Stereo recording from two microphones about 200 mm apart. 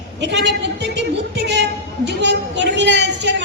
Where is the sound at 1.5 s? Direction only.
60° right (ahead or behind).